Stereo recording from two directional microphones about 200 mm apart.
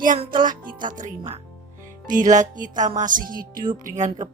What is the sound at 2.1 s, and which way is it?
Speech, 40° right (ahead or behind).